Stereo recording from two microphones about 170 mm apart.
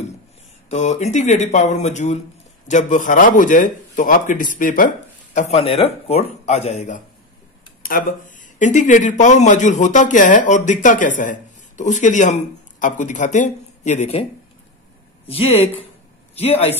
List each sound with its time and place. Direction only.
0.7 s speech: 45° left (ahead or behind)
5.3 s speech: 40° left (ahead or behind)
7.8 s speech: 55° left (ahead or behind)
15.2 s speech: 35° left (ahead or behind)